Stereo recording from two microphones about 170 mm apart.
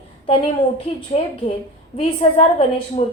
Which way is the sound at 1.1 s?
40° left (ahead or behind).